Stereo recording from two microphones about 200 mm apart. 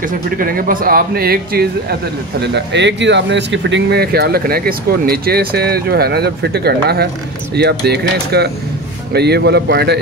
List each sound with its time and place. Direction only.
0.4 s speech: 45° right (ahead or behind)